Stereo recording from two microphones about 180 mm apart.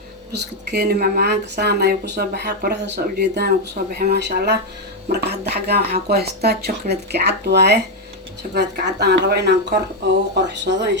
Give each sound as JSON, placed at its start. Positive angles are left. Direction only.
{"t": 0.3, "sound": "speech", "side_deg": -70}